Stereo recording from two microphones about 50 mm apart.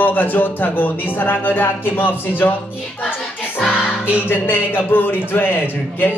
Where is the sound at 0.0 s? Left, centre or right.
Left.